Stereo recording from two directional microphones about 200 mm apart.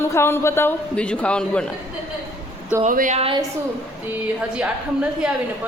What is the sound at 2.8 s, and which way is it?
Speech, 40° right (ahead or behind).